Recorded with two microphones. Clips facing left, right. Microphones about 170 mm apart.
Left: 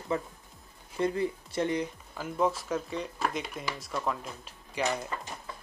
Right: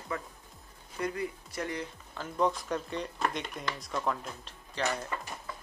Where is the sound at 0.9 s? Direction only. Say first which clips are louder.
Left 5 dB; 25° left (ahead or behind).